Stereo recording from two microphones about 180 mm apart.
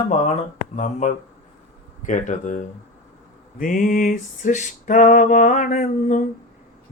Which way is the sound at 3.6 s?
45° left (ahead or behind).